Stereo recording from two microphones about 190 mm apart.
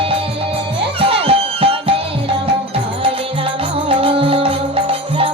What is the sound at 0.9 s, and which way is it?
Music, 30° right (ahead or behind).